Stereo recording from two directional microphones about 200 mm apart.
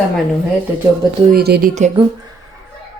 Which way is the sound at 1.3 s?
50° right (ahead or behind).